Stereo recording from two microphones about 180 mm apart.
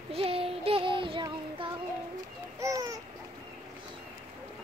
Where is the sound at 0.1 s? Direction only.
30° right (ahead or behind).